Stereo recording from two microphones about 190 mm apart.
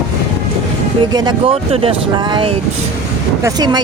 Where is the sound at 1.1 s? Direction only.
20° right (ahead or behind).